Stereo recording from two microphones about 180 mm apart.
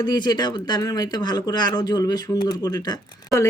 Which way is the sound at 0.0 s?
25° left (ahead or behind).